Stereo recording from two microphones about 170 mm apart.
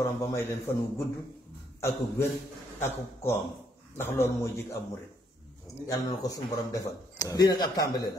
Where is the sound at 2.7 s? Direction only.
15° left (ahead or behind).